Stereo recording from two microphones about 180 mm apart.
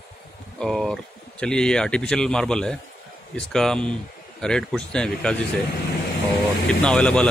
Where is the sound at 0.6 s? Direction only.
Centre (ahead or behind).